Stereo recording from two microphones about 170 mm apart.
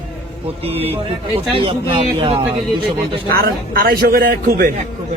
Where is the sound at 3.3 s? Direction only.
60° right (ahead or behind).